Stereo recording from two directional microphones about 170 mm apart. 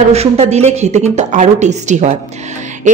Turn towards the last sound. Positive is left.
turn(degrees=-45)  # may be behind; listen again after turning